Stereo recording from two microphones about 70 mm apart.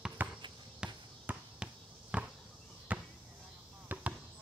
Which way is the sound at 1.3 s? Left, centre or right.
Right.